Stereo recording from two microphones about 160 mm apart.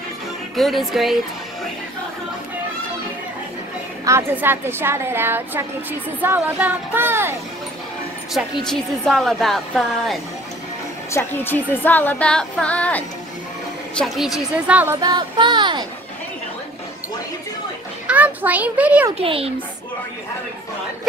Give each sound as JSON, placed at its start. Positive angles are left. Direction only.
{"t": 0.6, "sound": "speech", "side_deg": 0}
{"t": 4.0, "sound": "a woman's voice", "side_deg": -15}
{"t": 8.6, "sound": "speech", "side_deg": 0}
{"t": 11.1, "sound": "speech", "side_deg": 15}
{"t": 15.0, "sound": "music", "side_deg": -25}
{"t": 18.0, "sound": "a woman's voice", "side_deg": -10}
{"t": 19.1, "sound": "a child's voice", "side_deg": -35}